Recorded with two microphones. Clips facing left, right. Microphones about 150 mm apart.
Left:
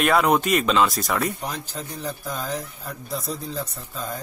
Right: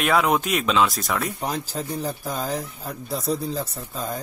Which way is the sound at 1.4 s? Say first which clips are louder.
Right 4 dB; 40° right (ahead or behind).